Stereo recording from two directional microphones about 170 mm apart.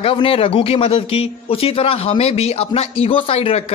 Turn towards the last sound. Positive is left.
turn(degrees=35)  # may be behind; listen again after turning